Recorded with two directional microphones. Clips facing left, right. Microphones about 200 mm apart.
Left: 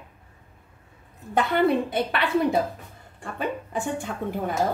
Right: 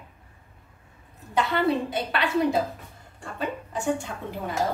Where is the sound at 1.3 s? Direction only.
55° left (ahead or behind).